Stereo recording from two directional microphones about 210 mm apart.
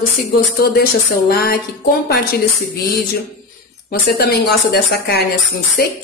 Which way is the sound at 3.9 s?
45° left (ahead or behind).